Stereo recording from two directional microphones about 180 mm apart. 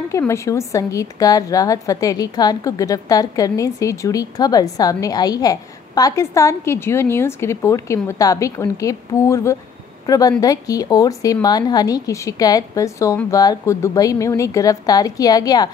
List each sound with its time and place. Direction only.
0.2 s a woman's voice: 15° left (ahead or behind)